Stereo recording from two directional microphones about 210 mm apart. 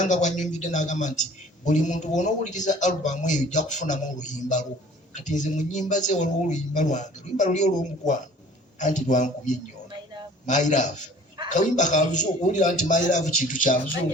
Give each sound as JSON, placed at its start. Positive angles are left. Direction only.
{"t": 0.0, "sound": "a man's voice", "side_deg": 35}